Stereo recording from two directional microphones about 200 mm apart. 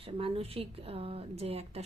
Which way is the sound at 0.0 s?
30° right (ahead or behind).